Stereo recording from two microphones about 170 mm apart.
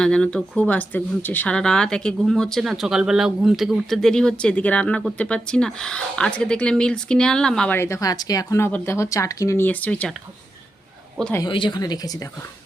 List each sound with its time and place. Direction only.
0.0 s speech: 5° left (ahead or behind)
11.4 s speech: 30° left (ahead or behind)